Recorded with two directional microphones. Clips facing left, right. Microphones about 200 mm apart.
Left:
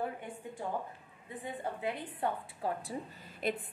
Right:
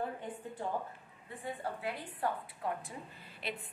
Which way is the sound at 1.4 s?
20° left (ahead or behind).